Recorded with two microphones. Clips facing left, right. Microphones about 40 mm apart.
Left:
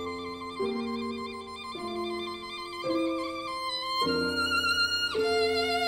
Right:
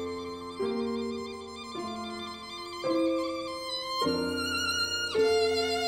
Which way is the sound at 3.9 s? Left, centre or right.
Left.